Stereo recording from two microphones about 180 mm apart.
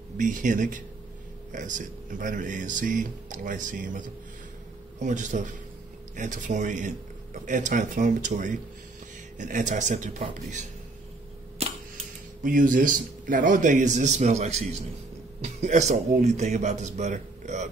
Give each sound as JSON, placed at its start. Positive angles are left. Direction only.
{"t": 0.2, "sound": "speech", "side_deg": -45}
{"t": 12.4, "sound": "speech", "side_deg": -50}